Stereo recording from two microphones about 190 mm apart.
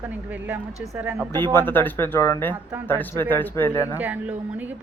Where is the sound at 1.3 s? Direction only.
20° right (ahead or behind).